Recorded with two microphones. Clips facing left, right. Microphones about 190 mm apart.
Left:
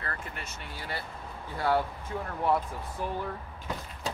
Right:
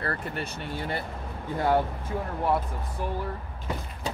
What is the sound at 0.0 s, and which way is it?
Speech, 35° right (ahead or behind).